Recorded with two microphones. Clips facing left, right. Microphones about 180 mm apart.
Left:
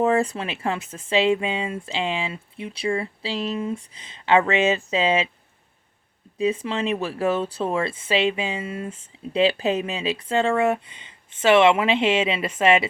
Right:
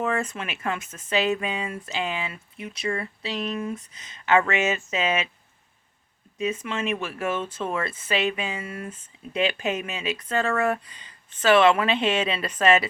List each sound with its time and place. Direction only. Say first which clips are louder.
0.0 s speech: left 6 dB; 35° left (ahead or behind)
6.4 s speech: left 4 dB; 30° left (ahead or behind)